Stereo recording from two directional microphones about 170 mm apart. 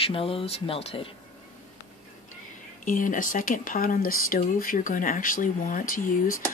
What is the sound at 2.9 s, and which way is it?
Speech, 50° left (ahead or behind).